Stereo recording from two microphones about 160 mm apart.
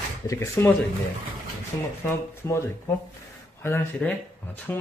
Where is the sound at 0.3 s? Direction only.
20° left (ahead or behind).